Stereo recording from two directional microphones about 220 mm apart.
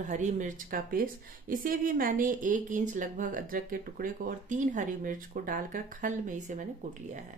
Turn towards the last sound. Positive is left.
turn(degrees=-35)  # may be behind; listen again after turning